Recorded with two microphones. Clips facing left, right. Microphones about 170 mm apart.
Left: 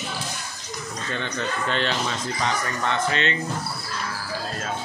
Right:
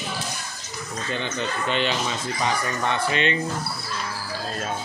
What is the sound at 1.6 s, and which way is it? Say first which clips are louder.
Speech: right 2 dB; 10° right (ahead or behind).